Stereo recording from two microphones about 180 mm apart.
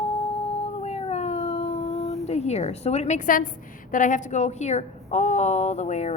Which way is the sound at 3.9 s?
45° left (ahead or behind).